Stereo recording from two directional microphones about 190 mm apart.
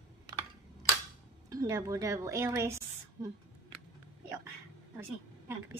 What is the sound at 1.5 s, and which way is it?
A woman's voice, 15° right (ahead or behind).